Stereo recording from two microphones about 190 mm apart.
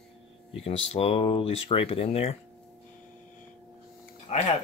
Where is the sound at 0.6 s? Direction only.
30° left (ahead or behind).